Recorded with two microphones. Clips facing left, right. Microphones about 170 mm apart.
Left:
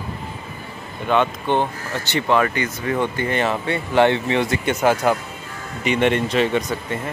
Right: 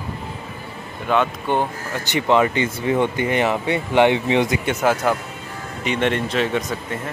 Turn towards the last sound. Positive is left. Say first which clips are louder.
# left 2 dB
turn(degrees=0)  # may be behind; listen again after turning